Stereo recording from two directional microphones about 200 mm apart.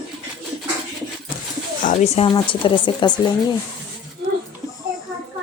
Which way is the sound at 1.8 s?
35° left (ahead or behind).